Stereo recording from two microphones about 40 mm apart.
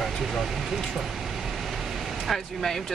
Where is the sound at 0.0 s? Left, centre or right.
Centre.